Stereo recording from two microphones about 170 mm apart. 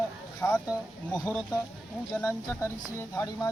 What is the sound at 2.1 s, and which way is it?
Speech, 15° left (ahead or behind).